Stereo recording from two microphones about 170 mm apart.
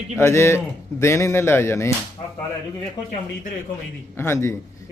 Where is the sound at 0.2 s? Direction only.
15° left (ahead or behind).